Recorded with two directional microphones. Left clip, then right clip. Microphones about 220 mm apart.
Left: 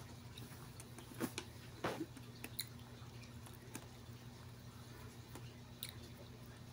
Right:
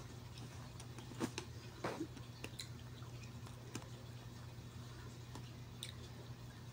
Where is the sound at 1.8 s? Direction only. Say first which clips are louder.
Left 2 dB; 15° left (ahead or behind).